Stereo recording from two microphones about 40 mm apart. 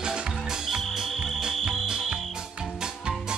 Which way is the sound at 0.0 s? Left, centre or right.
Centre.